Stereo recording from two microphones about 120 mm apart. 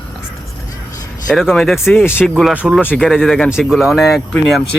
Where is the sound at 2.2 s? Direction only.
Centre (ahead or behind).